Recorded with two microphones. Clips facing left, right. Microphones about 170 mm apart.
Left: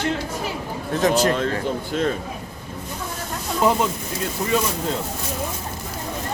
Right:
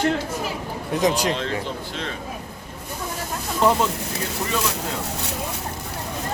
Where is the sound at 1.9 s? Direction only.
45° left (ahead or behind).